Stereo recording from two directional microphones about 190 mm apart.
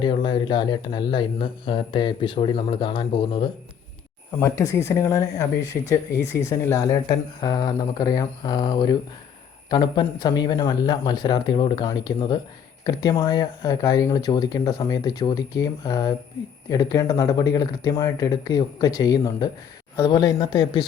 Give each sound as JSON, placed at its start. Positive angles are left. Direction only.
{"t": 0.0, "sound": "speech", "side_deg": 25}
{"t": 4.3, "sound": "speech", "side_deg": 15}